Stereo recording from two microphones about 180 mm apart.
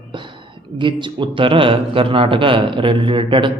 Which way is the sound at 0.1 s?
25° right (ahead or behind).